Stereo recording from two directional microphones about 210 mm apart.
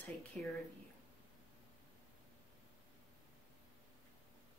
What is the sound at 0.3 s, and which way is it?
Speech, 5° left (ahead or behind).